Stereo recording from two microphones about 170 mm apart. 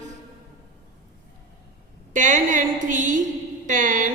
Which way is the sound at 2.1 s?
50° right (ahead or behind).